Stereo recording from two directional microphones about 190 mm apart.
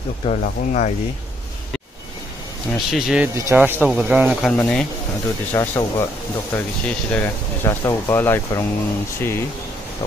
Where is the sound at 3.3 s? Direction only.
15° right (ahead or behind).